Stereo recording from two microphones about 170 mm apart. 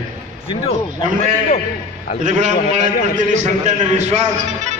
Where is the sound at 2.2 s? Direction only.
45° right (ahead or behind).